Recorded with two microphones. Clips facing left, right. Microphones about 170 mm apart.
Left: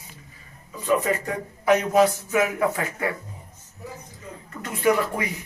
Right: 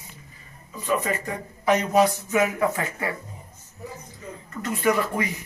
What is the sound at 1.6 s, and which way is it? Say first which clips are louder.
A man's voice: left 1 dB; 5° left (ahead or behind).